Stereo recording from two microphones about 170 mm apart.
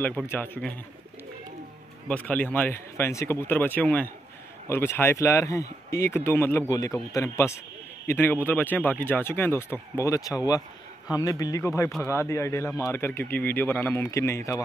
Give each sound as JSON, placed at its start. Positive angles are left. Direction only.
{"t": 0.0, "sound": "speech", "side_deg": 10}
{"t": 2.0, "sound": "speech", "side_deg": 10}